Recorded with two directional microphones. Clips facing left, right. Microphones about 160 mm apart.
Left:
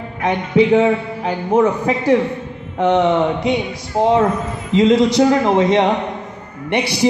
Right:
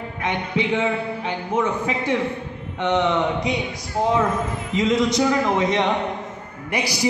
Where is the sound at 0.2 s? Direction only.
40° left (ahead or behind).